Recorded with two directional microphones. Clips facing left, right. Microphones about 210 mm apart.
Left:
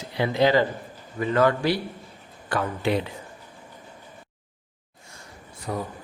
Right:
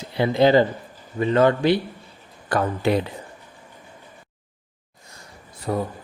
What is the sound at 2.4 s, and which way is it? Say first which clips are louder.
Speech: right 4 dB; 40° right (ahead or behind).